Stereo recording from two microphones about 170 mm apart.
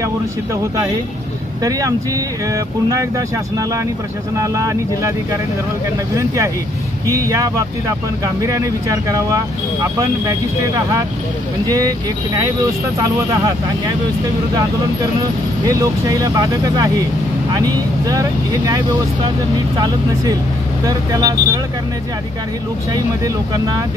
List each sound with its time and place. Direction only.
1.6 s speech: 20° right (ahead or behind)
11.6 s speech: 20° right (ahead or behind)
13.0 s speech: 20° right (ahead or behind)
15.6 s speech: 20° right (ahead or behind)
20.8 s speech: 20° right (ahead or behind)
23.2 s speech: 20° right (ahead or behind)